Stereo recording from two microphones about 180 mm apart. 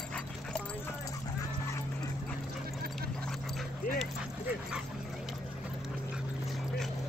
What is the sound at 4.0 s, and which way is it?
Dog, 5° right (ahead or behind).